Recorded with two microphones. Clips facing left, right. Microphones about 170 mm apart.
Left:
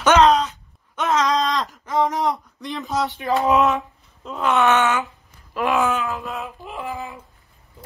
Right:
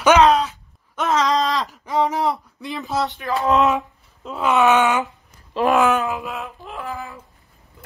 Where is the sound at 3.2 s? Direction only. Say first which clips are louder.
Left 3 dB; 20° left (ahead or behind).